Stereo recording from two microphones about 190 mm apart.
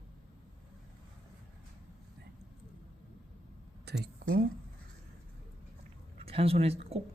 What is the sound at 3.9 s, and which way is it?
Speech, 60° right (ahead or behind).